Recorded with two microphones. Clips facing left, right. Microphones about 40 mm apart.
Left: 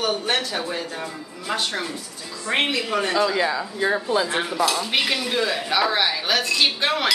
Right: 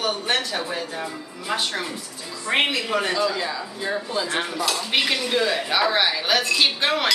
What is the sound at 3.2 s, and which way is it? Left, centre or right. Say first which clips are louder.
Speech: left 3 dB; centre.